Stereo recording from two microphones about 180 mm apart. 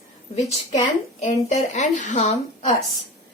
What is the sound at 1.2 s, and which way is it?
A woman's voice, 40° left (ahead or behind).